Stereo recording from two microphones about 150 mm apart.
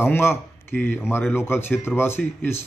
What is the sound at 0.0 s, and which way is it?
Speech, 15° left (ahead or behind).